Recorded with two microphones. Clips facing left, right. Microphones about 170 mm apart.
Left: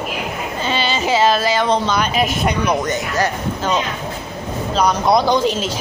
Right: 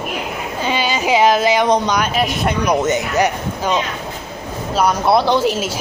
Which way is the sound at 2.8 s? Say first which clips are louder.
Right 3 dB; 20° right (ahead or behind).